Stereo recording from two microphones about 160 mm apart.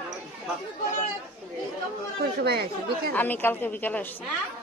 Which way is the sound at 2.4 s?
80° right.